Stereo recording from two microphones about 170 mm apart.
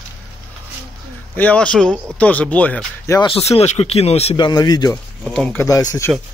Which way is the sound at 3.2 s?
35° left (ahead or behind).